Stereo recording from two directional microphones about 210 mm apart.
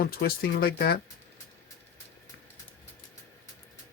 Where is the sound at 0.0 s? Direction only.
45° left (ahead or behind).